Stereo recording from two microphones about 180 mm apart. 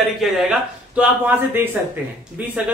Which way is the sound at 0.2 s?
Centre (ahead or behind).